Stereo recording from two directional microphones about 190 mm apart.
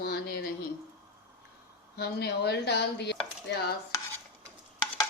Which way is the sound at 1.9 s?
60° left (ahead or behind).